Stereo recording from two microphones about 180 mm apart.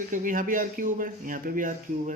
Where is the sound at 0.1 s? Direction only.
50° right (ahead or behind).